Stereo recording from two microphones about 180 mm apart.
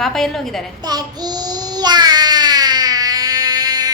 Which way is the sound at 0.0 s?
Centre (ahead or behind).